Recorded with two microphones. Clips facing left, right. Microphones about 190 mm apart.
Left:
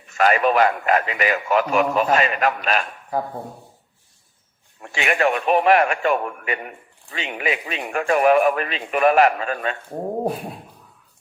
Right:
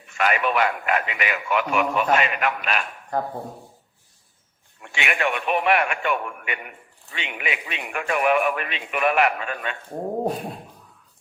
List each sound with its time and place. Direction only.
0.1 s speech: 35° left (ahead or behind)
3.1 s speech: 5° left (ahead or behind)
4.8 s speech: 35° left (ahead or behind)